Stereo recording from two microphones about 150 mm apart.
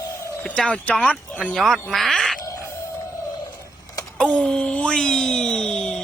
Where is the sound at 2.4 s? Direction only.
20° left (ahead or behind).